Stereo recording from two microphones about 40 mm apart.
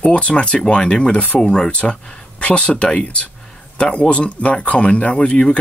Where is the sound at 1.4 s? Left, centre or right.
Centre.